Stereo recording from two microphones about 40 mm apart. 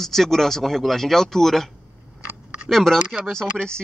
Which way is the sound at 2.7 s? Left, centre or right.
Centre.